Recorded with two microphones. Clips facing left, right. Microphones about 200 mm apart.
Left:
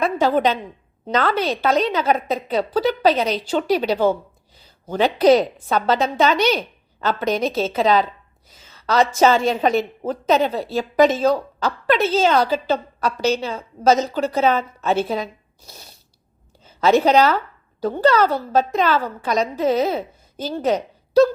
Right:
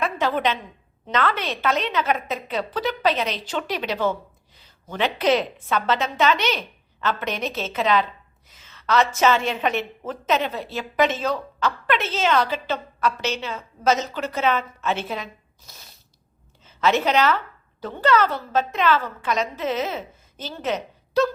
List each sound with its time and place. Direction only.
0.0 s a woman's voice: 35° left (ahead or behind)